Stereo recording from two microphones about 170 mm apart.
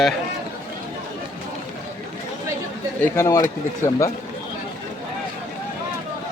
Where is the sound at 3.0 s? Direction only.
15° left (ahead or behind).